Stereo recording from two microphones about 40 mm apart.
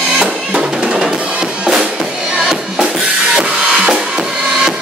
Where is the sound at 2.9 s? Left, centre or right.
Right.